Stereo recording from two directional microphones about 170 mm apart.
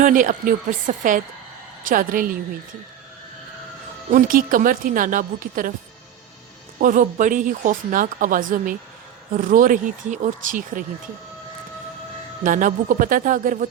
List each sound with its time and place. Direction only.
0.0 s speech: 50° right (ahead or behind)
4.1 s speech: 55° right (ahead or behind)
6.7 s speech: 50° right (ahead or behind)
12.4 s speech: 50° right (ahead or behind)